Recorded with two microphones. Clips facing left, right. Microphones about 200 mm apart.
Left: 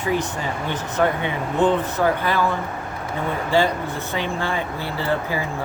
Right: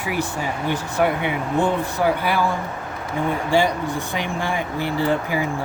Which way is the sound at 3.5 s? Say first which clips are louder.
Left 1 dB; 15° right (ahead or behind).